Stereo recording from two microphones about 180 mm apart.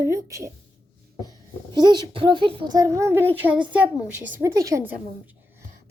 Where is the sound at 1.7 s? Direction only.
25° right (ahead or behind).